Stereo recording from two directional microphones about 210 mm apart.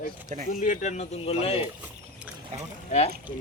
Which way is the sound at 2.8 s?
30° left (ahead or behind).